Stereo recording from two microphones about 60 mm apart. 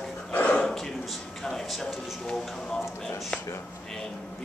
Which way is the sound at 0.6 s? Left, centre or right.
Centre.